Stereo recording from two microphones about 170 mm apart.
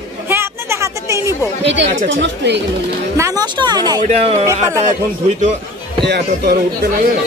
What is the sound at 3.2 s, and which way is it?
Speech, 25° right (ahead or behind).